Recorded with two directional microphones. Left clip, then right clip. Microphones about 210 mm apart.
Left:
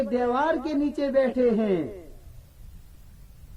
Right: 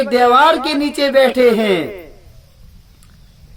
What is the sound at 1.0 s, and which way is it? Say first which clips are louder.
Music: right 12 dB; 10° right (ahead or behind).